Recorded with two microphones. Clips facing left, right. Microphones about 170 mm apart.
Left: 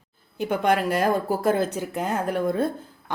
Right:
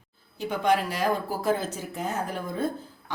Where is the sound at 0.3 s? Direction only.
55° left (ahead or behind).